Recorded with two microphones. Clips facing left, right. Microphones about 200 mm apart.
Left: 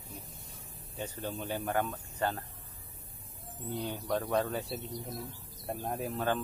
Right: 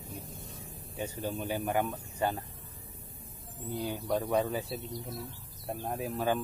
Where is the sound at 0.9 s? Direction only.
10° right (ahead or behind).